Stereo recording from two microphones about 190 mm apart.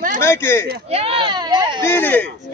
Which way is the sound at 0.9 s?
30° right (ahead or behind).